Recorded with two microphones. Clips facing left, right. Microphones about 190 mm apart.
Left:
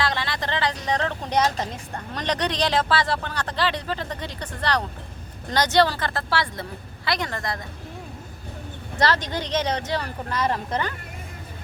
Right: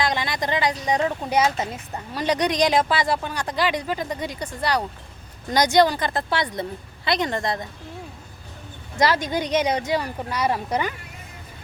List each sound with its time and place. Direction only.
0.0 s a woman's voice: 15° right (ahead or behind)
9.0 s a woman's voice: 10° right (ahead or behind)